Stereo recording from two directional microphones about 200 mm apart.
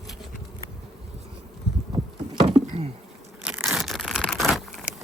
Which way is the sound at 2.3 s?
25° right (ahead or behind).